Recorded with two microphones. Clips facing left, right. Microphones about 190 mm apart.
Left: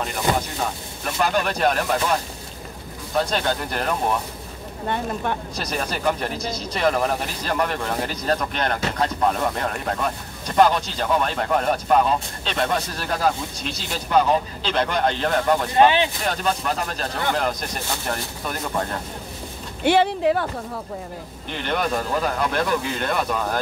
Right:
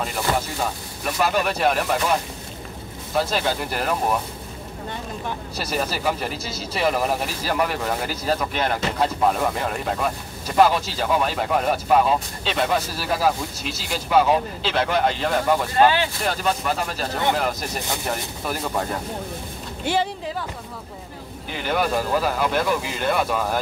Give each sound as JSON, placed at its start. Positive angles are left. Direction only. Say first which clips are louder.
{"t": 1.0, "sound": "speech", "louder": "even", "side_deg": -5}
{"t": 3.2, "sound": "speech", "louder": "even", "side_deg": -5}
{"t": 4.8, "sound": "speech", "louder": "left 6 dB", "side_deg": 60}
{"t": 5.6, "sound": "speech", "louder": "right 4 dB", "side_deg": -5}
{"t": 15.7, "sound": "speech", "louder": "left 2 dB", "side_deg": 20}
{"t": 16.3, "sound": "speech", "louder": "even", "side_deg": -5}
{"t": 19.8, "sound": "speech", "louder": "left 6 dB", "side_deg": 65}
{"t": 21.5, "sound": "speech", "louder": "right 1 dB", "side_deg": -5}